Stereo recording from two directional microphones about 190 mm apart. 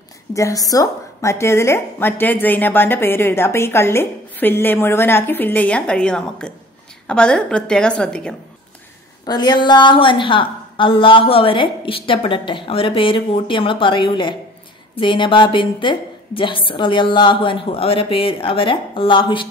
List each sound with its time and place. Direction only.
0.3 s a woman's voice: 15° left (ahead or behind)
9.2 s a woman's voice: 20° left (ahead or behind)